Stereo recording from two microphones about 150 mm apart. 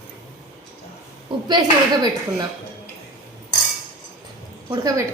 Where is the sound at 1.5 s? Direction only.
25° right (ahead or behind).